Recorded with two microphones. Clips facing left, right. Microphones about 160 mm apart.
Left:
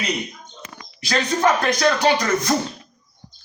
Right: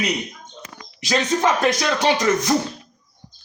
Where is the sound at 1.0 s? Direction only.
15° right (ahead or behind).